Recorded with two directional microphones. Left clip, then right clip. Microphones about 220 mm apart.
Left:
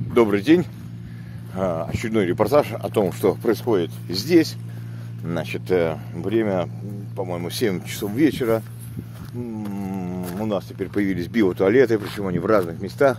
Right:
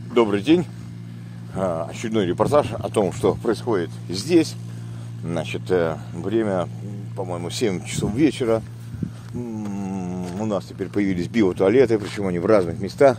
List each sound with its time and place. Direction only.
0.1 s speech: 5° left (ahead or behind)
9.7 s a sound: 10° right (ahead or behind)
10.3 s speech: 5° right (ahead or behind)
12.2 s speech: 20° right (ahead or behind)